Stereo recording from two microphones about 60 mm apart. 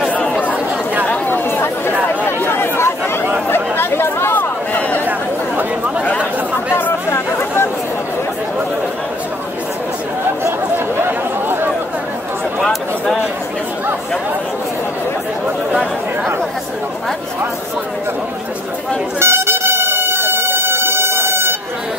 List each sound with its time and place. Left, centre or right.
0.1 s chatter: left
7.1 s chatter: left
11.0 s chatter: right
12.6 s a sound: centre
19.1 s air horn: right